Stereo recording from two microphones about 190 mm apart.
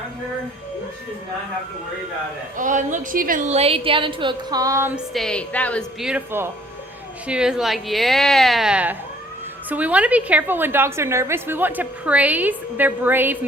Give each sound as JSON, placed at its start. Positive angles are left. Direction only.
{"t": 2.6, "sound": "a woman's voice", "side_deg": -40}
{"t": 5.1, "sound": "a woman's voice", "side_deg": 5}
{"t": 6.0, "sound": "a woman's voice", "side_deg": -5}